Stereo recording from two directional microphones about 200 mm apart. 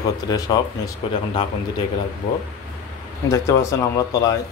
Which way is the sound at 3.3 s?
15° left (ahead or behind).